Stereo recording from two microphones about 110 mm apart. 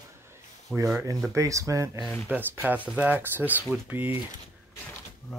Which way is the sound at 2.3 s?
15° right (ahead or behind).